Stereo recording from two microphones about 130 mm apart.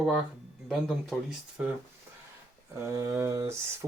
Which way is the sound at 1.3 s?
10° right (ahead or behind).